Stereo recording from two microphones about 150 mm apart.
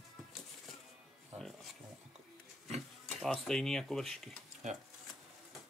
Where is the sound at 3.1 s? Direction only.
Centre (ahead or behind).